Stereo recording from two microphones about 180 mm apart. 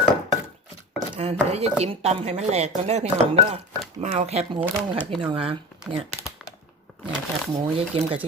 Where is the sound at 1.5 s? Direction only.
35° right (ahead or behind).